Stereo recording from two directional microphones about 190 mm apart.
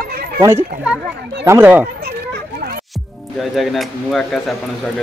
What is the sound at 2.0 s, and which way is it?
Children playing, 55° right (ahead or behind).